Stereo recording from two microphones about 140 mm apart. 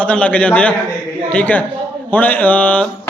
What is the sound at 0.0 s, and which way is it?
A man's voice, 10° left (ahead or behind).